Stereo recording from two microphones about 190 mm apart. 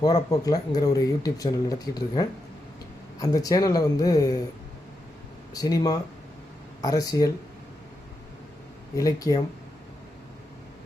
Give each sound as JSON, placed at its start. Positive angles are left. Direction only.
{"t": 0.0, "sound": "speech", "side_deg": 20}
{"t": 5.5, "sound": "speech", "side_deg": 20}
{"t": 9.0, "sound": "speech", "side_deg": 15}